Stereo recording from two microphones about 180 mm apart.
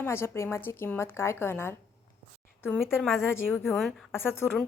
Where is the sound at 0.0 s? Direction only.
15° left (ahead or behind).